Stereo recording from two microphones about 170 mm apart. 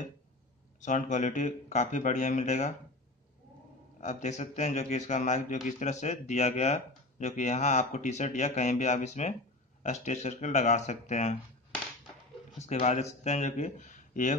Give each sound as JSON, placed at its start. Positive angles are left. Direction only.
{"t": 0.7, "sound": "speech", "side_deg": 45}
{"t": 4.0, "sound": "speech", "side_deg": 45}
{"t": 12.5, "sound": "speech", "side_deg": 40}